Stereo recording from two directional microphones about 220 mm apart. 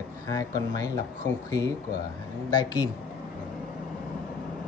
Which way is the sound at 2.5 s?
20° left (ahead or behind).